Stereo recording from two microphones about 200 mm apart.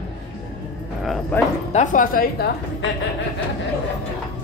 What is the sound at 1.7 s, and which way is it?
Speech, 35° left (ahead or behind).